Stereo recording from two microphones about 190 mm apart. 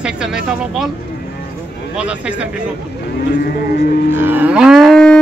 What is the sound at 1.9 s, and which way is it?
Speech, 5° right (ahead or behind).